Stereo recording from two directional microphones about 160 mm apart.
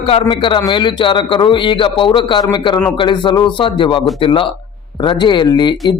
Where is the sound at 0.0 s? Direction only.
35° left (ahead or behind).